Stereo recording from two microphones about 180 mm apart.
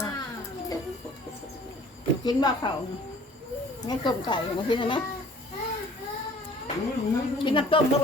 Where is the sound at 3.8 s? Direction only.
25° left (ahead or behind).